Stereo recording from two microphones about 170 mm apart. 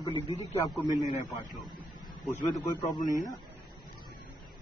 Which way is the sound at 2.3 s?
25° left (ahead or behind).